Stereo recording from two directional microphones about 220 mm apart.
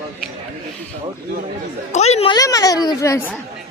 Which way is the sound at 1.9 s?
30° left (ahead or behind).